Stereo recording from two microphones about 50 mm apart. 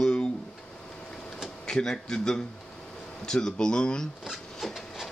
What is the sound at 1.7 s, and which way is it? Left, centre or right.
Speech, centre.